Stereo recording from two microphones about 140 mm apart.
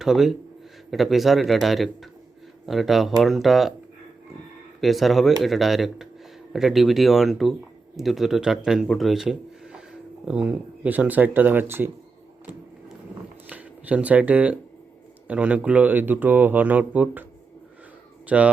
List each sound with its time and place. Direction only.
0.0 s speech: centre (ahead or behind)
4.8 s speech: centre (ahead or behind)
13.5 s speech: 10° right (ahead or behind)
18.3 s speech: 10° right (ahead or behind)